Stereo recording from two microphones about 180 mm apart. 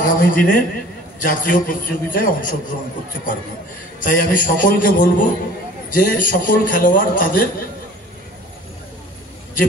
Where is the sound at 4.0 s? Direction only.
50° left (ahead or behind).